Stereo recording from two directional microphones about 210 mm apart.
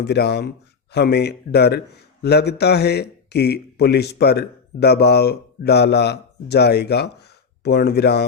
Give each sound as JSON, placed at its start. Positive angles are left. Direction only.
{"t": 0.0, "sound": "a man's voice", "side_deg": 50}